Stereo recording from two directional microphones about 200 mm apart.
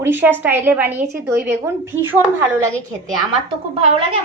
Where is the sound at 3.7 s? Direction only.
30° right (ahead or behind).